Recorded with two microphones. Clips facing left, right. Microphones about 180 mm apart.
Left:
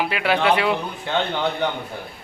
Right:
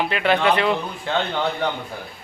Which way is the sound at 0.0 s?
5° left (ahead or behind).